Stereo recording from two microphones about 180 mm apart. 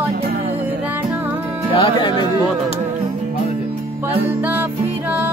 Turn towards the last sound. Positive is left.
turn(degrees=-10)  # may be behind; listen again after turning